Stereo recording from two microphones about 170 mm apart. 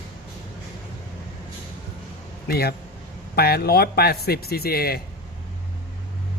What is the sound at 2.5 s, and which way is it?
A man's voice, 65° left (ahead or behind).